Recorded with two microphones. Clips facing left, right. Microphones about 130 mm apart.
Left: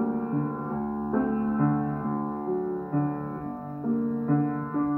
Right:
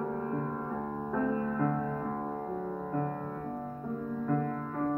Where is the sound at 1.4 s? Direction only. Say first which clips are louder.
Left 6 dB; 25° left (ahead or behind).